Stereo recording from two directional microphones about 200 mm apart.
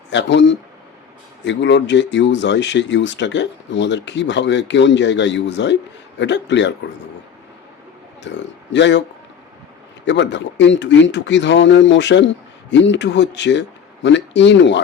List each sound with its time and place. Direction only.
0.1 s speech: 60° left (ahead or behind)
8.3 s speech: 65° left (ahead or behind)
10.1 s speech: 65° left (ahead or behind)